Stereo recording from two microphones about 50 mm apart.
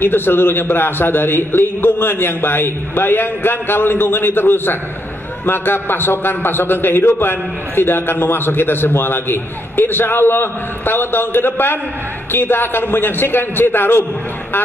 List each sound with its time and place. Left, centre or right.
0.0 s a man's voice: left